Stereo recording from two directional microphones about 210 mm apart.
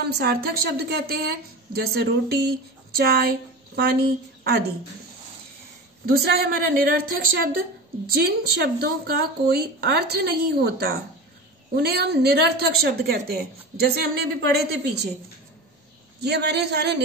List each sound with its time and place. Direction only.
0.1 s a woman's voice: 50° right (ahead or behind)
6.0 s a woman's voice: 50° right (ahead or behind)
16.2 s a woman's voice: 50° right (ahead or behind)